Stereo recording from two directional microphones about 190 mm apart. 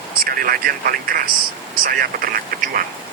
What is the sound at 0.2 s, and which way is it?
Speech, 50° right (ahead or behind).